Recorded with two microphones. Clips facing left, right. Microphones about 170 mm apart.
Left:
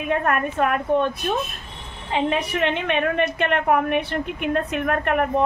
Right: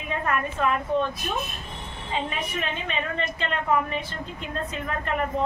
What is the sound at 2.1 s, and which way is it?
A woman's voice, 75° left (ahead or behind).